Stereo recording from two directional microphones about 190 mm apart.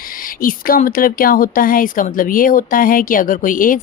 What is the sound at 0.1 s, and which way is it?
Speech, 45° left (ahead or behind).